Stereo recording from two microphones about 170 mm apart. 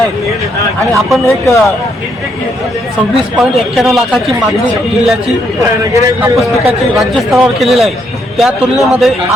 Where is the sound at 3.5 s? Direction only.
Centre (ahead or behind).